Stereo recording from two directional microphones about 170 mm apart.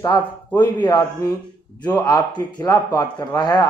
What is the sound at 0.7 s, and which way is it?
A man's voice, 25° left (ahead or behind).